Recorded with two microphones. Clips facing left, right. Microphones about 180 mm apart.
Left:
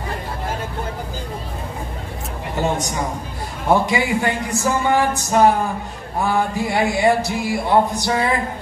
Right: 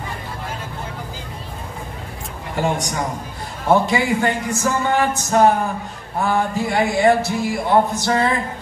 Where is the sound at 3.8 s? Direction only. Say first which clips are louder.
Right 1 dB; 20° left (ahead or behind).